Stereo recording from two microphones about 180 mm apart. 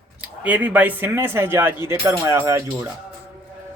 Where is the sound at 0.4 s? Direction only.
10° right (ahead or behind).